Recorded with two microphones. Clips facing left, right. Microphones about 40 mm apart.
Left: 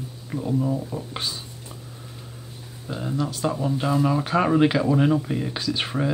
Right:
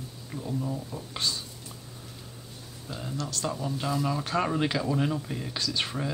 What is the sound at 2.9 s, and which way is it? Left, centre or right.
Speech, centre.